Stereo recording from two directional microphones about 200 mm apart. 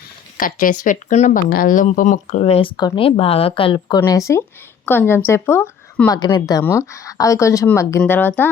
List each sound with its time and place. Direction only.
0.3 s speech: 45° left (ahead or behind); by 8.4 s 10° left (ahead or behind)